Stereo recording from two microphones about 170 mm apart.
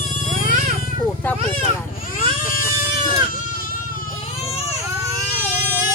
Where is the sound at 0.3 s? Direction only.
45° right (ahead or behind).